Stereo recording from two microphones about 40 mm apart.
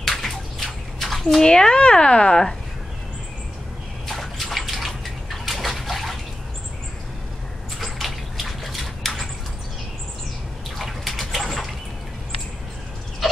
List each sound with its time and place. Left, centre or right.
0.2 s bathtub: centre
1.4 s speech: centre
4.1 s bathtub: centre
7.8 s rodents: centre
10.8 s a sound: centre
13.2 s fowl: centre